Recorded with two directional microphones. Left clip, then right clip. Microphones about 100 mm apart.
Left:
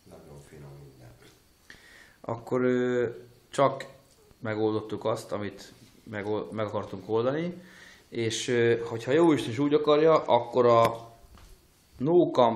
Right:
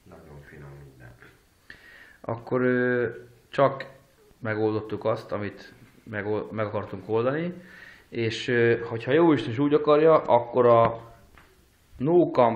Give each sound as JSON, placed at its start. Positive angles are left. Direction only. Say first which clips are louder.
{"t": 1.7, "sound": "a sound", "louder": "right 4 dB", "side_deg": 0}
{"t": 3.5, "sound": "a man's voice", "louder": "right 2 dB", "side_deg": 5}
{"t": 12.0, "sound": "a man's voice", "louder": "right 2 dB", "side_deg": 10}